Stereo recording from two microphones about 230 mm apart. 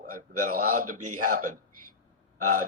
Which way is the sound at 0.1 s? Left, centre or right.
Right.